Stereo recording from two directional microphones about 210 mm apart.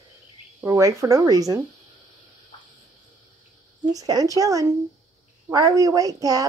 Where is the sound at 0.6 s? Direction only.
15° right (ahead or behind).